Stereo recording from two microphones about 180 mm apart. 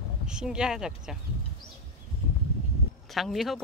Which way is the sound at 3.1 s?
Centre (ahead or behind).